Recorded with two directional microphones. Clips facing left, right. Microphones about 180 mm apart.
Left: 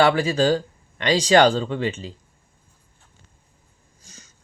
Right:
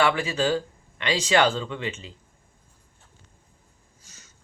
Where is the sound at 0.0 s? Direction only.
35° left (ahead or behind).